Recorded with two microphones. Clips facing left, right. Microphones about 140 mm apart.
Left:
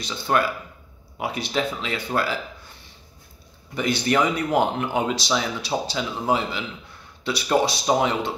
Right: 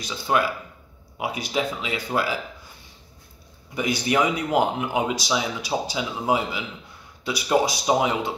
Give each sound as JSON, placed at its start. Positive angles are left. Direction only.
{"t": 0.0, "sound": "speech", "side_deg": -5}
{"t": 3.7, "sound": "speech", "side_deg": -10}